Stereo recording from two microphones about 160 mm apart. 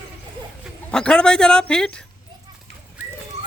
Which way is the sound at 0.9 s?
5° left (ahead or behind).